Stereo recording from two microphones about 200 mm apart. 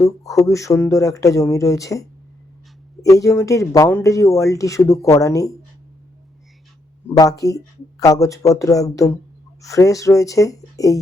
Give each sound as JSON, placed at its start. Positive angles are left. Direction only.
{"t": 0.0, "sound": "speech", "side_deg": 15}
{"t": 7.1, "sound": "speech", "side_deg": 15}